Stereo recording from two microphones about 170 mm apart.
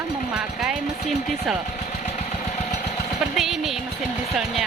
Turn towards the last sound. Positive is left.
turn(degrees=0)  # may be behind; listen again after turning